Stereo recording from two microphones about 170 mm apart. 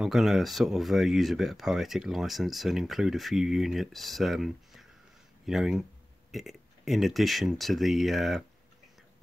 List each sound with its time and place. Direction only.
0.0 s speech: centre (ahead or behind)